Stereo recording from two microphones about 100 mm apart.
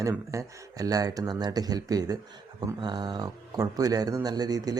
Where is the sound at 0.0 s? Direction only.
30° right (ahead or behind).